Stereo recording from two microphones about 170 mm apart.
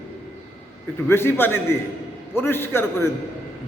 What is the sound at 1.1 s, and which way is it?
A man's voice, 15° left (ahead or behind).